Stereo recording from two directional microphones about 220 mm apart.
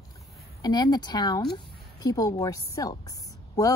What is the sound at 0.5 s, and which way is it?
A woman's voice, 20° left (ahead or behind).